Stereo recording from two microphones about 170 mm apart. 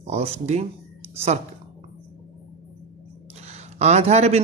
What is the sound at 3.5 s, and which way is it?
Speech, 40° right (ahead or behind).